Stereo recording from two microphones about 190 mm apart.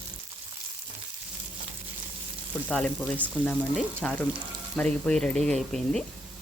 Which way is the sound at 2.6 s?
5° left (ahead or behind).